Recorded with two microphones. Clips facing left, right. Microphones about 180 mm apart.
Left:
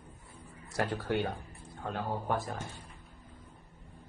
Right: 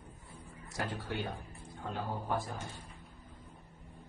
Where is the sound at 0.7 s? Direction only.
70° left (ahead or behind).